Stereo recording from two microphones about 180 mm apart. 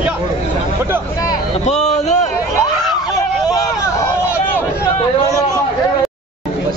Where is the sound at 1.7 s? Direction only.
40° left (ahead or behind).